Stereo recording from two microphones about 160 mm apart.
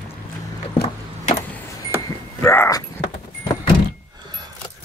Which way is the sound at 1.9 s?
15° left (ahead or behind).